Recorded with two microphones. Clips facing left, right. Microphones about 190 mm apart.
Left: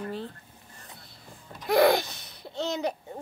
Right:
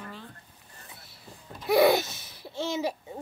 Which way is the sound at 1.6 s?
5° right (ahead or behind).